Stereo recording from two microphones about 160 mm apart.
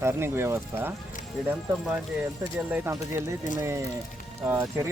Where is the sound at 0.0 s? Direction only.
15° right (ahead or behind).